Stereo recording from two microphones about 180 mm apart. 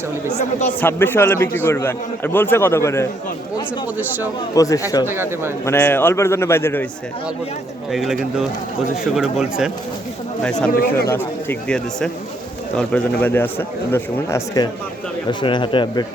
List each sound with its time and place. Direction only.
0.8 s a man's voice: 10° left (ahead or behind)
4.5 s speech: 20° left (ahead or behind)
5.0 s speech: 15° right (ahead or behind)
5.6 s a man's voice: 15° left (ahead or behind)
7.9 s speech: centre (ahead or behind)
10.7 s speech: 55° left (ahead or behind)
11.1 s a man's voice: 10° left (ahead or behind)